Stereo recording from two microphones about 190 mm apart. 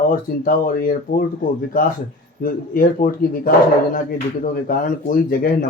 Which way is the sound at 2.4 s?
50° left (ahead or behind).